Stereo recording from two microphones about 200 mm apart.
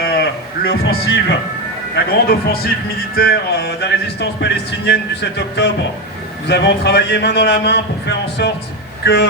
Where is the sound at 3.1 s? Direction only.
50° left (ahead or behind).